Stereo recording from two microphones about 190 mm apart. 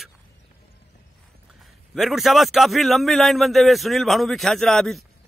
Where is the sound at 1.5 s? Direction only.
Centre (ahead or behind).